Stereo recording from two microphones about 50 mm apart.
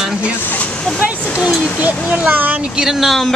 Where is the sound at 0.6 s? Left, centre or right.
Left.